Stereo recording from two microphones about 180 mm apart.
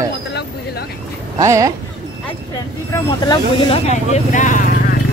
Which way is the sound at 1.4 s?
20° right (ahead or behind).